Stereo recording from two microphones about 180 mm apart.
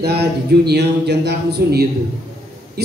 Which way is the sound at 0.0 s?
65° right (ahead or behind).